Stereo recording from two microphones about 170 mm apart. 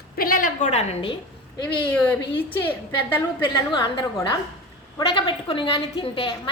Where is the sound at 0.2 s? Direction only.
55° left (ahead or behind); by 1.1 s 40° left (ahead or behind).